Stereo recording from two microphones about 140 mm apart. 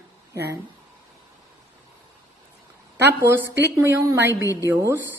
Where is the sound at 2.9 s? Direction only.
15° right (ahead or behind).